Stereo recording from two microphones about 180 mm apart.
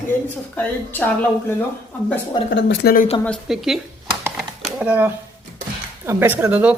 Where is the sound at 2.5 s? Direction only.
70° left (ahead or behind).